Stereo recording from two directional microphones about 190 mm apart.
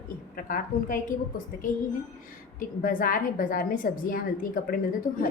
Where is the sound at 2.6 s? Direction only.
45° left (ahead or behind).